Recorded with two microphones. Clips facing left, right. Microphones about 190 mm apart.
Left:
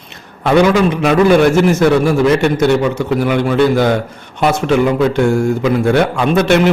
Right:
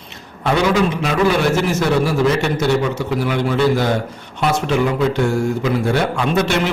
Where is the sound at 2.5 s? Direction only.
55° left (ahead or behind).